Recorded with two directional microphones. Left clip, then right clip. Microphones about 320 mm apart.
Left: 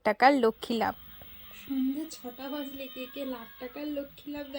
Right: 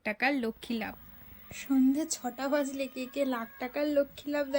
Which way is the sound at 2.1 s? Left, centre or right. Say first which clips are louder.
Right 8 dB; centre.